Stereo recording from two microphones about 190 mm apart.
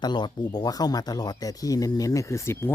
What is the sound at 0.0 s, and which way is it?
Speech, 20° left (ahead or behind).